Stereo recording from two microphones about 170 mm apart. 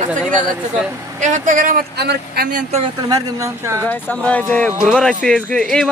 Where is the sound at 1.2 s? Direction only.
50° right (ahead or behind).